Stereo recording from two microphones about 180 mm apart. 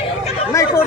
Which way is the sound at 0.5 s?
15° left (ahead or behind).